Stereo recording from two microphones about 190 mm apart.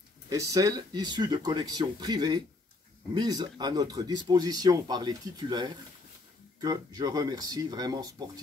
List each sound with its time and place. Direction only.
0.3 s speech: 20° right (ahead or behind)